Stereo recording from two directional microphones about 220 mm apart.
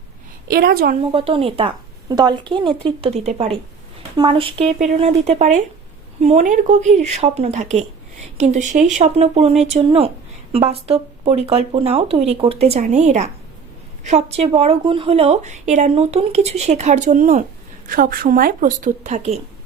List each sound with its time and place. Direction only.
0.4 s a woman's voice: 40° right (ahead or behind)
1.1 s a woman's voice: 25° right (ahead or behind)